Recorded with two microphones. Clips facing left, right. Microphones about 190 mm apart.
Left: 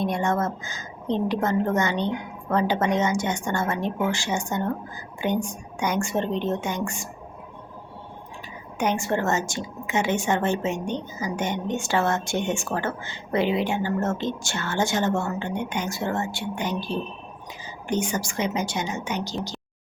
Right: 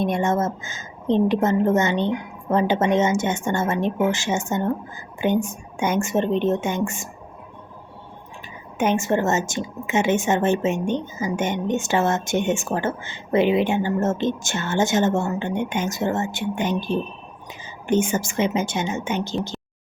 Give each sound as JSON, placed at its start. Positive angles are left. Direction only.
{"t": 0.0, "sound": "a woman's voice", "side_deg": -20}
{"t": 8.8, "sound": "a woman's voice", "side_deg": -20}